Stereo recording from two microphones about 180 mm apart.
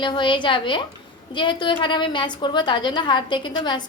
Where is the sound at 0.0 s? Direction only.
25° left (ahead or behind).